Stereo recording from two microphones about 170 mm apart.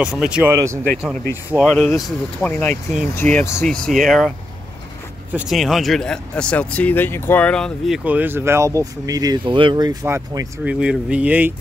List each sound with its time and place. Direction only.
0.0 s speech: 5° right (ahead or behind)
0.5 s speech: 15° right (ahead or behind)
0.9 s speech: 5° right (ahead or behind)
5.3 s speech: centre (ahead or behind); by 10.5 s 15° right (ahead or behind)
10.6 s speech: 5° right (ahead or behind)